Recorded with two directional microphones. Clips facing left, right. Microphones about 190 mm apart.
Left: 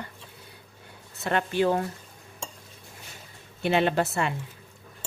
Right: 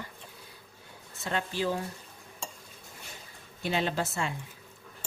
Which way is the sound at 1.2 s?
60° left (ahead or behind).